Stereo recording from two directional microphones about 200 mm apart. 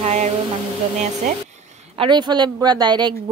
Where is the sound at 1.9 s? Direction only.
25° right (ahead or behind).